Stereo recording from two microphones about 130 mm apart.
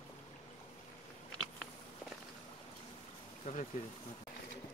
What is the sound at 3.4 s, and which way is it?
Speech, 65° left (ahead or behind).